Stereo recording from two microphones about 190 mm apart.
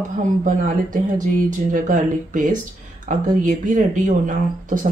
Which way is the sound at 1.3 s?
45° right (ahead or behind).